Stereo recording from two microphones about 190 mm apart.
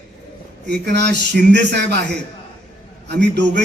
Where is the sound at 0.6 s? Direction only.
65° right (ahead or behind).